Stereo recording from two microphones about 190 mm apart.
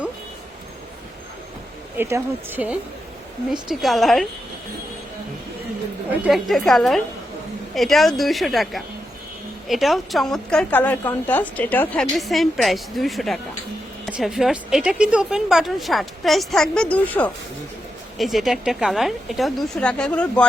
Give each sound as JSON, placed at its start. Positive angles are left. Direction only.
{"t": 2.0, "sound": "speech", "side_deg": -15}
{"t": 6.2, "sound": "speech", "side_deg": 0}